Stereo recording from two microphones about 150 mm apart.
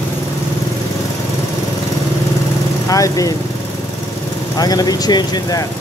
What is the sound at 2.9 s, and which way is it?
Speech, 25° left (ahead or behind).